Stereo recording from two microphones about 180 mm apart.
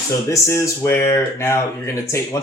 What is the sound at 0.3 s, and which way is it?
Speech, 15° left (ahead or behind).